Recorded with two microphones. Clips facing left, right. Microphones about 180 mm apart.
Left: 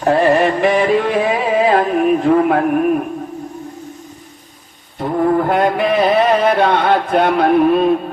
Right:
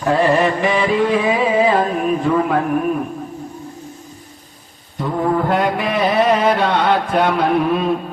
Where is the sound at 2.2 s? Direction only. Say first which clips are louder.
Left 4 dB; 60° left (ahead or behind).